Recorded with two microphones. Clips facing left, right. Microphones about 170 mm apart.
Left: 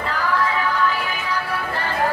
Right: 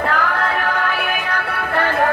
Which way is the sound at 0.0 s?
60° right (ahead or behind).